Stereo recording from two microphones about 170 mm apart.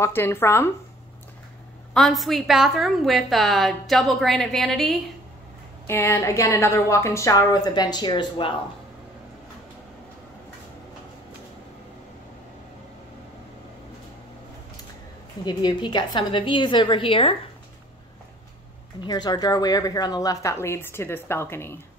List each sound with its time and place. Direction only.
0.0 s a woman's voice: 15° left (ahead or behind)
2.0 s a woman's voice: centre (ahead or behind)
5.9 s a woman's voice: 15° left (ahead or behind)
15.4 s speech: 25° left (ahead or behind)
18.9 s speech: 25° left (ahead or behind)